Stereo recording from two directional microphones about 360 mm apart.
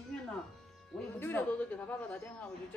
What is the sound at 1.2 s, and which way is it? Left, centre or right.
Speech, centre.